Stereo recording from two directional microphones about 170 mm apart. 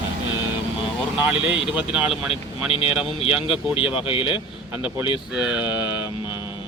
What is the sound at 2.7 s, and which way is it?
Speech, 35° left (ahead or behind).